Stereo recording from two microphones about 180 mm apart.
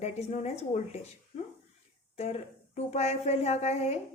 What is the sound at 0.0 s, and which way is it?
Speech, 35° left (ahead or behind).